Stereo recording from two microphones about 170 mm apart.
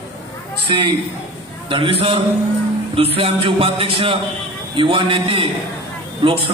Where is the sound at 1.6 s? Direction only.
30° right (ahead or behind).